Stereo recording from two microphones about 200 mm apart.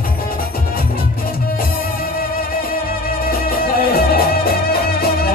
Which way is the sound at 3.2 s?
50° left (ahead or behind).